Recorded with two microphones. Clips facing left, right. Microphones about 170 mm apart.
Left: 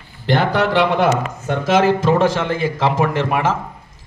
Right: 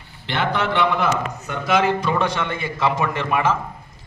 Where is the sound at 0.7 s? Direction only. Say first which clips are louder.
Left 5 dB; 85° left.